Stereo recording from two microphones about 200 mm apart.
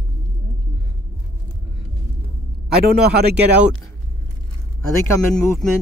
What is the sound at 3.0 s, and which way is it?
Speech, 50° right (ahead or behind).